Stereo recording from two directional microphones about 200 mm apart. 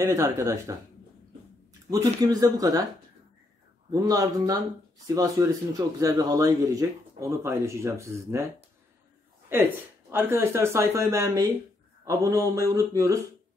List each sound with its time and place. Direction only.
0.0 s speech: 15° right (ahead or behind)
3.9 s speech: 15° right (ahead or behind)
9.5 s speech: 10° right (ahead or behind)